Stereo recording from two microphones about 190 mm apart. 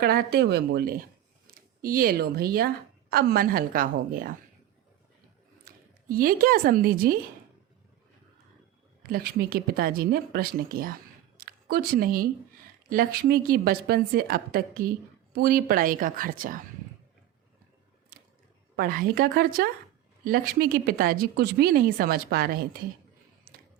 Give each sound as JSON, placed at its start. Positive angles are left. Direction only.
{"t": 0.0, "sound": "a woman's voice", "side_deg": -55}
{"t": 5.6, "sound": "speech", "side_deg": -50}
{"t": 9.0, "sound": "a woman's voice", "side_deg": -50}
{"t": 18.8, "sound": "a woman's voice", "side_deg": -50}
{"t": 23.5, "sound": "music", "side_deg": -55}